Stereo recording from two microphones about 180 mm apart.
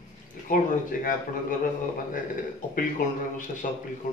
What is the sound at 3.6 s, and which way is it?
Speech, 45° left (ahead or behind).